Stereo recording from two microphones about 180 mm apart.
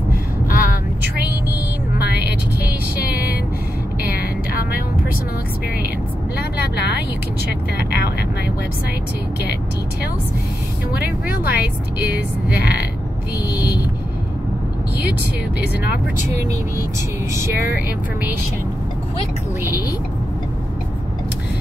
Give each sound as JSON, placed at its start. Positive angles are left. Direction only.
{"t": 0.5, "sound": "vehicle", "side_deg": 50}
{"t": 2.0, "sound": "music", "side_deg": 65}
{"t": 4.5, "sound": "vehicle", "side_deg": 55}
{"t": 6.3, "sound": "vehicle", "side_deg": 65}
{"t": 11.0, "sound": "vehicle", "side_deg": -5}
{"t": 13.5, "sound": "vehicle", "side_deg": 20}
{"t": 17.3, "sound": "vehicle", "side_deg": -10}